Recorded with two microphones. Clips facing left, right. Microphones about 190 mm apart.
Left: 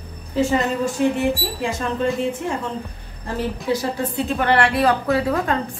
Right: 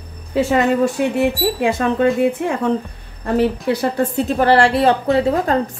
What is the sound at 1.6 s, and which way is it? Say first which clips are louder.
Speech: right 6 dB; 65° right (ahead or behind).